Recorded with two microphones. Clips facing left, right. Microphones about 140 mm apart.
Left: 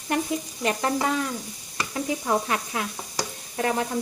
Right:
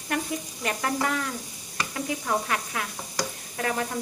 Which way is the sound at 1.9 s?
25° left (ahead or behind).